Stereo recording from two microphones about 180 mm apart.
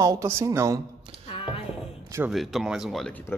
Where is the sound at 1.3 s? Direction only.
30° left (ahead or behind).